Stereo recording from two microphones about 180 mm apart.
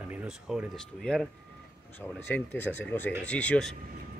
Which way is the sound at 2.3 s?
10° left (ahead or behind).